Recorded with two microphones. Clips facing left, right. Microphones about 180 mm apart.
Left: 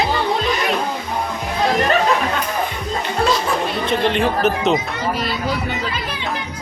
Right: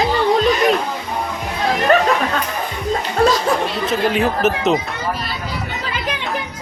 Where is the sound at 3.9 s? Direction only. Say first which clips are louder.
Even; 5° right (ahead or behind).